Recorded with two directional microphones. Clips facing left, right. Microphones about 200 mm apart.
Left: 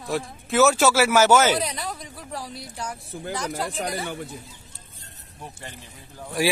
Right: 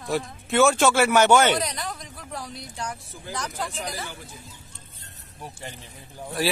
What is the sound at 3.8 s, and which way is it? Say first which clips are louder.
Speech: left 5 dB; 60° left (ahead or behind).